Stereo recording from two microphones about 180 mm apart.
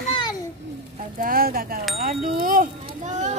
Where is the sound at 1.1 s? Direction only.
55° right (ahead or behind).